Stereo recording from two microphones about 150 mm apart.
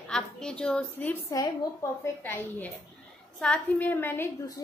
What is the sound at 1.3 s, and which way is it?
A woman's voice, 20° left (ahead or behind).